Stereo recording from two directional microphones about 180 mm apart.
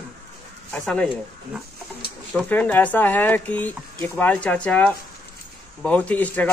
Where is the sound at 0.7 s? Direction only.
5° left (ahead or behind).